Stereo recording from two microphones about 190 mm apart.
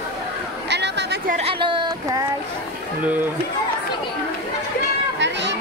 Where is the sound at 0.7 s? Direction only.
65° right (ahead or behind).